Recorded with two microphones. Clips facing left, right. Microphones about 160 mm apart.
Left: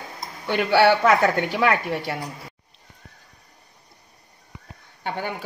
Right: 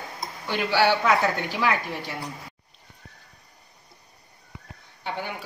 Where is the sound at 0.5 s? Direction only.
60° left (ahead or behind).